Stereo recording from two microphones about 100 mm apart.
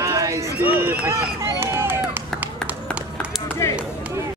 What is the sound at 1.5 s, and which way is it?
Run, 25° right (ahead or behind).